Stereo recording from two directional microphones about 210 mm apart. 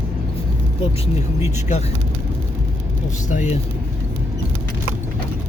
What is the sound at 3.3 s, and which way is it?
Speech, 35° left (ahead or behind).